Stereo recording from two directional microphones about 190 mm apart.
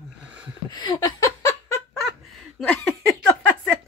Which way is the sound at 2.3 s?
5° left (ahead or behind).